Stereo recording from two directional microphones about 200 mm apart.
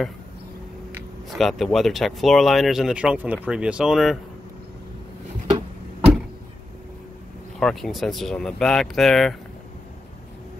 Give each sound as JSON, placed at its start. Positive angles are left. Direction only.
{"t": 1.3, "sound": "speech", "side_deg": 0}
{"t": 7.5, "sound": "speech", "side_deg": 0}